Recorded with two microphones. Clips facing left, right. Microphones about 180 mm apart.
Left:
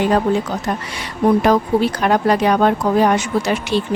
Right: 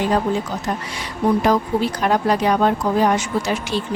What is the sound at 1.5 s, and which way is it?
A woman's voice, 65° left (ahead or behind).